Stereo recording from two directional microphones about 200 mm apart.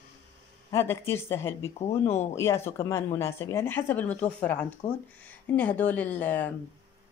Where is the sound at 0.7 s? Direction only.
10° left (ahead or behind).